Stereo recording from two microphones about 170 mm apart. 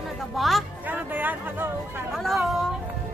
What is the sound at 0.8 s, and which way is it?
Speech, 10° right (ahead or behind).